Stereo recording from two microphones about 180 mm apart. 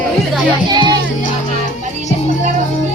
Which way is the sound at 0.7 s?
25° right (ahead or behind).